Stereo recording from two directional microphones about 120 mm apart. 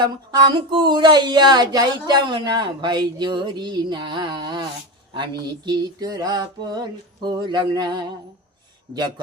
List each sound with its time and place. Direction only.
0.0 s speech: 35° right (ahead or behind)